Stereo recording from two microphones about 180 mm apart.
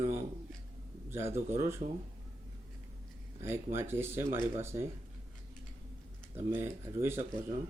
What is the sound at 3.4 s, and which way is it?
Speech, 15° right (ahead or behind).